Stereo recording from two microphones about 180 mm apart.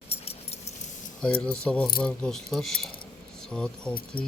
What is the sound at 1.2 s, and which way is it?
Speech, 5° left (ahead or behind).